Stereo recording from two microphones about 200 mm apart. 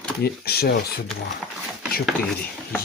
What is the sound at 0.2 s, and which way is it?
Speech, 50° left (ahead or behind).